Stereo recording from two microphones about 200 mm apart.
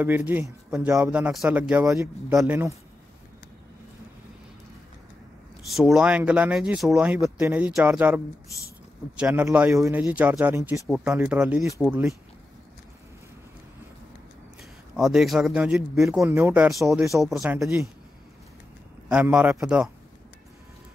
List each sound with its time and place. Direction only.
0.0 s a man's voice: 10° right (ahead or behind)
5.7 s a man's voice: centre (ahead or behind)
14.6 s a man's voice: centre (ahead or behind)
16.2 s speech: 10° right (ahead or behind)
19.0 s speech: 5° right (ahead or behind)